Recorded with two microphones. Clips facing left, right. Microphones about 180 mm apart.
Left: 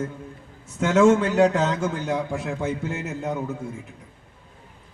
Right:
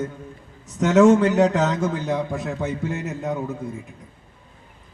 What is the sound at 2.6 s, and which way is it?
Speech, 15° right (ahead or behind).